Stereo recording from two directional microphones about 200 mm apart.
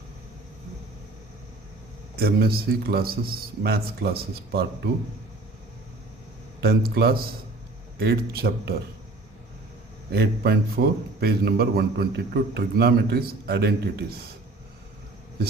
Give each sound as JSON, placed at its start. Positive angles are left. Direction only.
{"t": 2.1, "sound": "a man's voice", "side_deg": -50}
{"t": 6.6, "sound": "a man's voice", "side_deg": -50}
{"t": 10.1, "sound": "a man's voice", "side_deg": -55}